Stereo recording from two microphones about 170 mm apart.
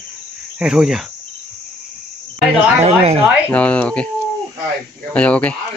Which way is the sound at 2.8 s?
40° right (ahead or behind).